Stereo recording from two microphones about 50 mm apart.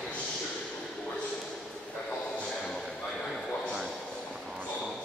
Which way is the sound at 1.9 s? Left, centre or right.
Left.